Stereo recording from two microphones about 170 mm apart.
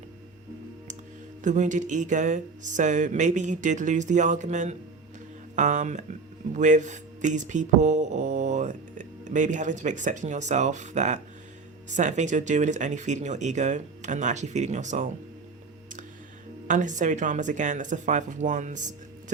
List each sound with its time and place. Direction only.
1.5 s speech: 45° right (ahead or behind)
16.6 s speech: 45° right (ahead or behind)